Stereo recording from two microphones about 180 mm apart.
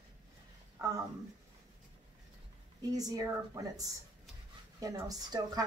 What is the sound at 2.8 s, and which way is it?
Speech, 20° right (ahead or behind).